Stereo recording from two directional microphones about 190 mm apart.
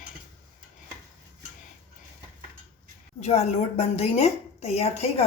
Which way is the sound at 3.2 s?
35° left (ahead or behind).